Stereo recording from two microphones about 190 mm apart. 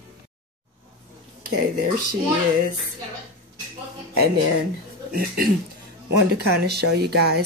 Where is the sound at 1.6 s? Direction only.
50° right (ahead or behind).